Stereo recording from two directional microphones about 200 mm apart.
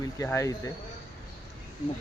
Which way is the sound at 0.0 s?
15° left (ahead or behind).